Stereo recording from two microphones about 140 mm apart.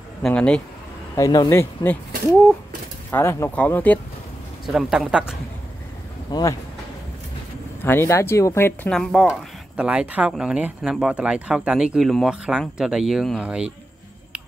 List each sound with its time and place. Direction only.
0.2 s speech: 5° left (ahead or behind)
1.1 s speech: 25° left (ahead or behind)
3.1 s speech: 20° left (ahead or behind)
4.6 s speech: centre (ahead or behind)
6.3 s speech: 30° left (ahead or behind)
7.8 s speech: 15° left (ahead or behind)
8.9 s speech: centre (ahead or behind)